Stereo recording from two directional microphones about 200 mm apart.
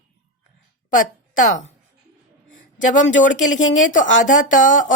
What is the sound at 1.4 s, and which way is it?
Speech, 40° left (ahead or behind).